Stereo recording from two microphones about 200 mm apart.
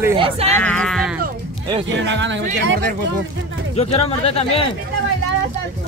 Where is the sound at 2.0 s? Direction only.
65° right (ahead or behind).